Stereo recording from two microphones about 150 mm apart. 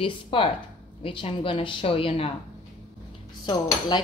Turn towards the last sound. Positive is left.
turn(degrees=30)  # may be behind; listen again after turning